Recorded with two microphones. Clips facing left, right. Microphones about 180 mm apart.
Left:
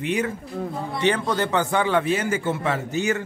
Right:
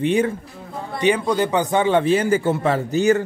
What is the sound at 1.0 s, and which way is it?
A man's voice, 10° right (ahead or behind).